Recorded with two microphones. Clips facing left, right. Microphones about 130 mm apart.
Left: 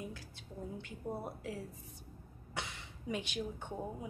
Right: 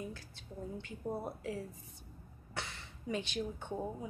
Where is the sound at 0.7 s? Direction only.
5° left (ahead or behind).